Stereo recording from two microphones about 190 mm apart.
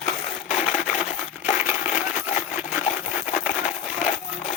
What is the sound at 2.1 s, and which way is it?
Coin, 40° left (ahead or behind).